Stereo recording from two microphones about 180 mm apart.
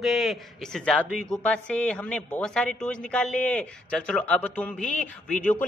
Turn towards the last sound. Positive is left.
turn(degrees=10)  # may be behind; listen again after turning